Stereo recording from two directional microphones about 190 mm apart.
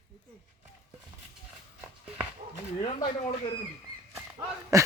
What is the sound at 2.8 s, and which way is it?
Speech, 30° left (ahead or behind).